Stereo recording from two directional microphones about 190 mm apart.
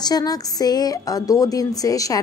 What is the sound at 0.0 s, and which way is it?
A woman's voice, 20° left (ahead or behind).